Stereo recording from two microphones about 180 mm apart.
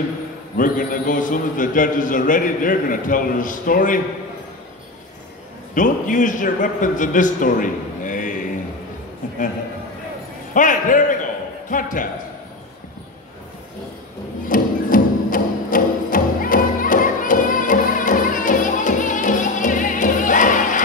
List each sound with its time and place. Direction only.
0.6 s a man's voice: 50° left (ahead or behind)
5.8 s a man's voice: 45° left (ahead or behind)
10.5 s a man's voice: 45° left (ahead or behind)
14.5 s music: 50° left (ahead or behind)